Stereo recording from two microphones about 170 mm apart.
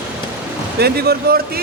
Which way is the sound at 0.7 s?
70° right (ahead or behind).